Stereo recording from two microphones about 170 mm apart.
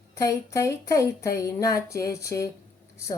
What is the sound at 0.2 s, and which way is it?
A woman's voice, 20° left (ahead or behind).